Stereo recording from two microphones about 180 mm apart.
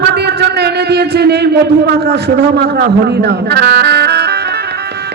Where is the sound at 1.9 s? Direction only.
65° right (ahead or behind).